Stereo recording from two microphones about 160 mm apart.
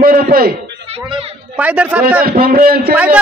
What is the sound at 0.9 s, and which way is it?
Speech, 40° right (ahead or behind).